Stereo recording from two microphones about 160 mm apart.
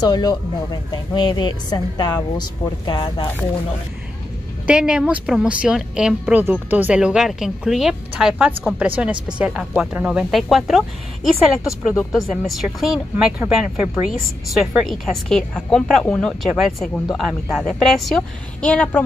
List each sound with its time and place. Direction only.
0.0 s speech: 25° left (ahead or behind)
4.6 s speech: 5° right (ahead or behind)
12.1 s speech: centre (ahead or behind)